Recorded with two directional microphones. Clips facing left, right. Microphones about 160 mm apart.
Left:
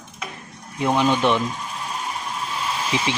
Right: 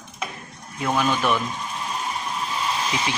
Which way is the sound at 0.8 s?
20° left (ahead or behind).